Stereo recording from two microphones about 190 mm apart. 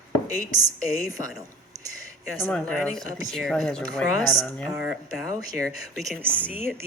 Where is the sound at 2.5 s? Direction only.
5° left (ahead or behind).